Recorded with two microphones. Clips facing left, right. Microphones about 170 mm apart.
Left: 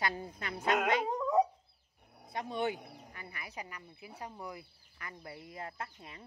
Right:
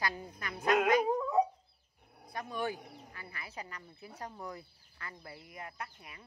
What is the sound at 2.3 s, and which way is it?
Speech, 20° left (ahead or behind).